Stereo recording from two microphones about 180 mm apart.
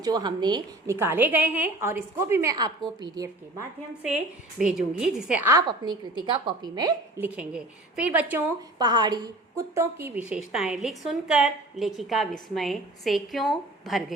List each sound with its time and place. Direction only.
0.0 s a woman's voice: 25° right (ahead or behind)
4.0 s a woman's voice: 5° right (ahead or behind)
5.5 s a woman's voice: 20° right (ahead or behind)
7.2 s a woman's voice: 5° right (ahead or behind)
8.8 s a woman's voice: 25° right (ahead or behind); by 14.2 s centre (ahead or behind)